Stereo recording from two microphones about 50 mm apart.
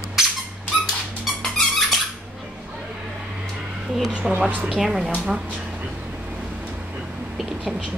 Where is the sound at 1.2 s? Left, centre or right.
Centre.